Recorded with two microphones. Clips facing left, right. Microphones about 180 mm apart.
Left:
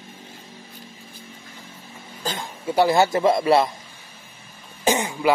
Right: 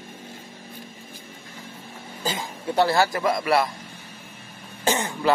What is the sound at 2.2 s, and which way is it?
Speech, 5° right (ahead or behind).